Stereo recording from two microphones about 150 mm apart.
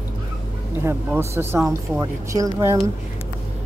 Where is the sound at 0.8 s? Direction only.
15° right (ahead or behind).